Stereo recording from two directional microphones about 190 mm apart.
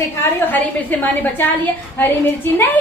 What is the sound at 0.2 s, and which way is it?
Speech, 10° left (ahead or behind).